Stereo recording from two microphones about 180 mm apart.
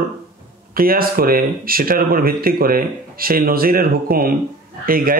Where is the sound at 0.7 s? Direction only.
55° right (ahead or behind).